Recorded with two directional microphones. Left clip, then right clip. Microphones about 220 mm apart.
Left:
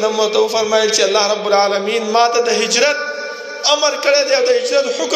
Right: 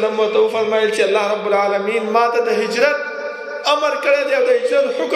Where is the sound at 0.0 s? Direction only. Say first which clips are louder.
Left 1 dB; 20° left (ahead or behind).